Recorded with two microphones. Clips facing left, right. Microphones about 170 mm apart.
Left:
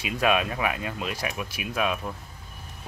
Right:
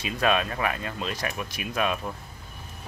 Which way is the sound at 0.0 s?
10° left (ahead or behind).